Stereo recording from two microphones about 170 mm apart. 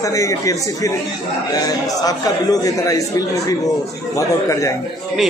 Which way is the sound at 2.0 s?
20° left (ahead or behind).